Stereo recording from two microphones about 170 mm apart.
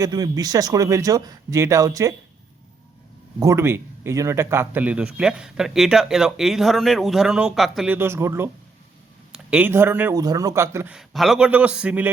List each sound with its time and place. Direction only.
0.0 s speech: 20° right (ahead or behind)
3.4 s speech: 15° right (ahead or behind)
7.9 s speech: 15° right (ahead or behind)
10.9 s speech: centre (ahead or behind)